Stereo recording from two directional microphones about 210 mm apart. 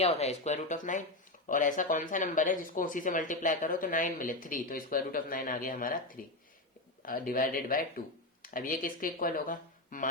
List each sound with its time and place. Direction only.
0.0 s speech: 30° left (ahead or behind)